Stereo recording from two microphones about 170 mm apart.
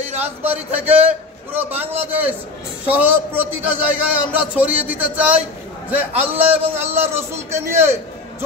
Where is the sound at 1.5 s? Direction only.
10° right (ahead or behind).